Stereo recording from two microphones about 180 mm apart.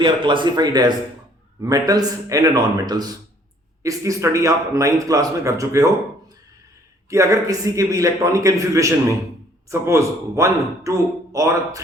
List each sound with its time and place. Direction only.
0.0 s a man's voice: 25° right (ahead or behind)